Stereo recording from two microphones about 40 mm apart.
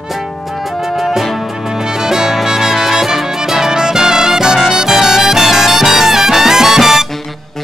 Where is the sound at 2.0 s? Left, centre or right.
Centre.